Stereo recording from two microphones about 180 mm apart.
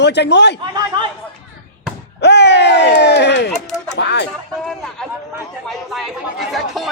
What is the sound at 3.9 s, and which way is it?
Speech, 70° left (ahead or behind).